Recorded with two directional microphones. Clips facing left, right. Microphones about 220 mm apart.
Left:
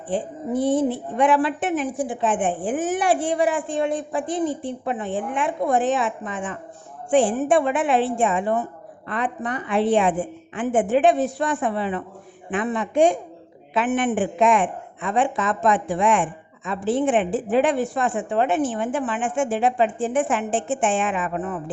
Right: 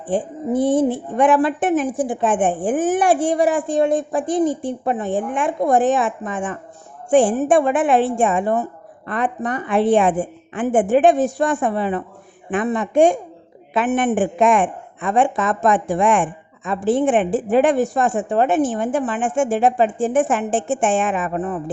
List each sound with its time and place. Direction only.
0.1 s a woman's voice: 50° right (ahead or behind)